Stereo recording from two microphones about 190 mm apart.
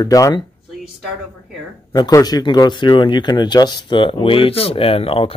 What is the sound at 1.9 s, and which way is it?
Speech, 20° left (ahead or behind).